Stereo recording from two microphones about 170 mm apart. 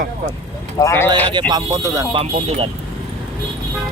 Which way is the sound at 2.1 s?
30° right (ahead or behind).